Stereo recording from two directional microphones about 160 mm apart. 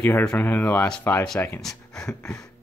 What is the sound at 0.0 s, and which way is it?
Speech, 10° left (ahead or behind).